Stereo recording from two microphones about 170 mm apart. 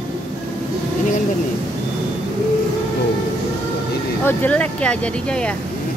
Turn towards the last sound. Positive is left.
turn(degrees=5)  # may be behind; listen again after turning